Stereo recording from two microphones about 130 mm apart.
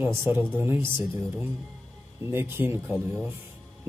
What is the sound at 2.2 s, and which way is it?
Speech, 15° right (ahead or behind).